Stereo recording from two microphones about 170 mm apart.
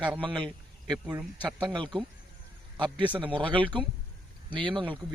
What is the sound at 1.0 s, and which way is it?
Speech, 5° right (ahead or behind).